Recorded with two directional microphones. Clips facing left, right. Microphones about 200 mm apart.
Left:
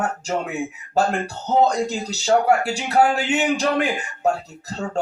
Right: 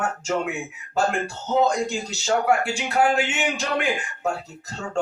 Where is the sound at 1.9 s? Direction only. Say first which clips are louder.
Left 4 dB; 35° left (ahead or behind).